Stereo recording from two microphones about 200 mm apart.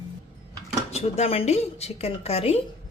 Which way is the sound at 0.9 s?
30° left (ahead or behind).